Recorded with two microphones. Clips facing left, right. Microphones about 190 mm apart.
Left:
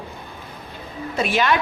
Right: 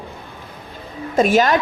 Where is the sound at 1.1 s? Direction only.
45° right (ahead or behind).